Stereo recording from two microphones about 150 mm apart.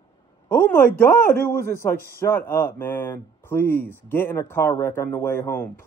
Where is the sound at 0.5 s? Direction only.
15° left (ahead or behind).